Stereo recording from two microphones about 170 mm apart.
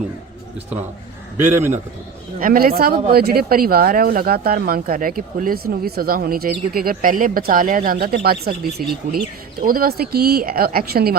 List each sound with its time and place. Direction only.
1.5 s a man's voice: 15° right (ahead or behind)
2.4 s speech: 55° right (ahead or behind)